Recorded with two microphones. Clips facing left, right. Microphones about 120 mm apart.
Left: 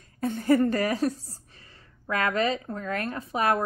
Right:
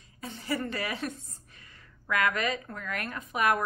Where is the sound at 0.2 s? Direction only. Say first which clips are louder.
Left 11 dB; 50° left (ahead or behind).